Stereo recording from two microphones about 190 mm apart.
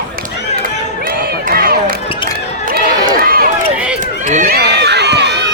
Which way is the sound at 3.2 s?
50° right (ahead or behind).